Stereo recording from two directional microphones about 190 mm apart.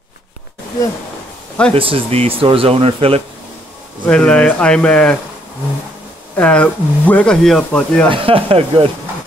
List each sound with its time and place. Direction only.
1.8 s speech: 30° right (ahead or behind)
4.0 s speech: 5° left (ahead or behind)
6.3 s speech: 5° left (ahead or behind)
8.1 s speech: 30° right (ahead or behind)